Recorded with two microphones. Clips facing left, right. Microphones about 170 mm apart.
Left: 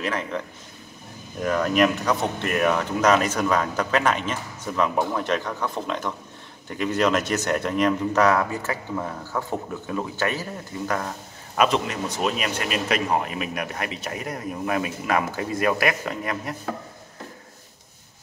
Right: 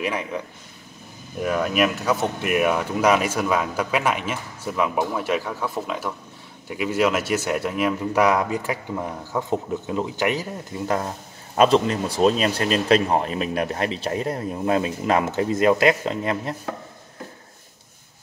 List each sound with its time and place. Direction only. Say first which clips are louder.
0.0 s speech: right 1 dB; 10° right (ahead or behind)
1.4 s speech: left 1 dB; 5° right (ahead or behind); by 16.5 s 25° right (ahead or behind)